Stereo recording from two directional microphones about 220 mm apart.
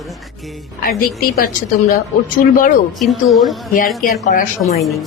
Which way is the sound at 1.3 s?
40° left (ahead or behind).